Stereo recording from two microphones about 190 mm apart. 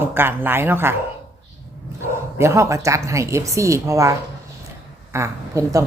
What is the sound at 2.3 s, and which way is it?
Speech, 15° right (ahead or behind).